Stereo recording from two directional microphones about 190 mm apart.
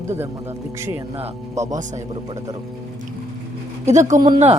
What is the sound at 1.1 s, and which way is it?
Speech, 30° right (ahead or behind).